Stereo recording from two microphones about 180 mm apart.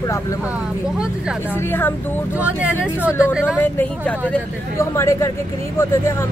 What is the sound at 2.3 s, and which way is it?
Speech, 10° right (ahead or behind).